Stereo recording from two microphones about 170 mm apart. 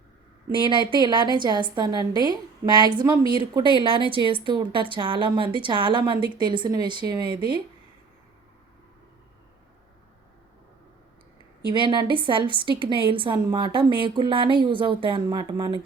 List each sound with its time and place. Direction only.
0.5 s a woman's voice: 30° right (ahead or behind)
11.7 s a woman's voice: 25° right (ahead or behind)